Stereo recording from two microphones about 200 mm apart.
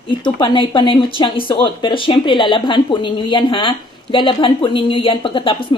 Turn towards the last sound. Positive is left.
turn(degrees=25)  # may be behind; listen again after turning